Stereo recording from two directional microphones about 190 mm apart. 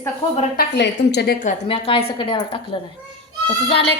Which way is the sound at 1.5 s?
30° left (ahead or behind).